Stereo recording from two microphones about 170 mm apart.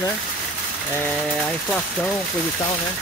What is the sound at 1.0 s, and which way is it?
Speech, 5° left (ahead or behind).